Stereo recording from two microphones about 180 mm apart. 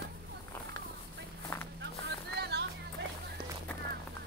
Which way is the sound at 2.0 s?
65° right (ahead or behind).